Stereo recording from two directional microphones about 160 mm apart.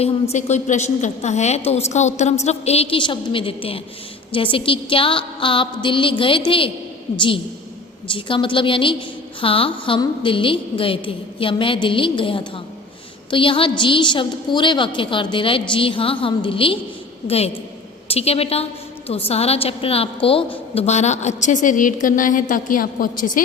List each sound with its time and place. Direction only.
0.0 s a woman's voice: 45° left (ahead or behind)
8.1 s a woman's voice: 30° left (ahead or behind); by 23.4 s 60° left (ahead or behind)